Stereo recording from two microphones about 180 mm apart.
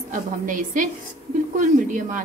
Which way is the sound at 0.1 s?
50° right (ahead or behind).